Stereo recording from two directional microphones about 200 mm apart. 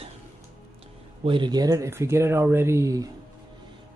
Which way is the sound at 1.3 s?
20° right (ahead or behind).